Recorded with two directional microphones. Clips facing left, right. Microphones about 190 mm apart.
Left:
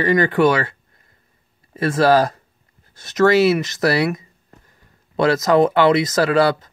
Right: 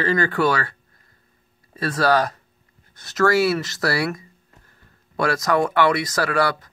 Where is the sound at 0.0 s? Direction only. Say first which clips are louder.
Left 5 dB; 20° left (ahead or behind).